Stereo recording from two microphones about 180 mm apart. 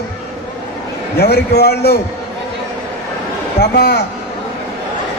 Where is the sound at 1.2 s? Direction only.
65° left (ahead or behind).